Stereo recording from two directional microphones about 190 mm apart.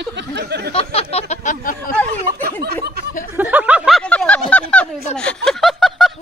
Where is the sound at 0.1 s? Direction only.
65° right (ahead or behind).